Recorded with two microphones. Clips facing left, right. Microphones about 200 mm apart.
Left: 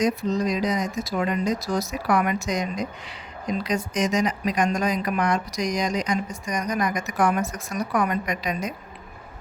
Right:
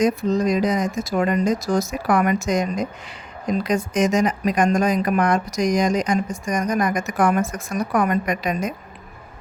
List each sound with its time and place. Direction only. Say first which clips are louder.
0.0 s speech: right 4 dB; 50° right (ahead or behind)